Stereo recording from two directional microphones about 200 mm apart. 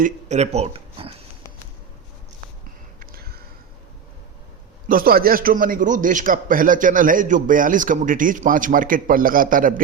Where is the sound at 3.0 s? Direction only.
50° right (ahead or behind).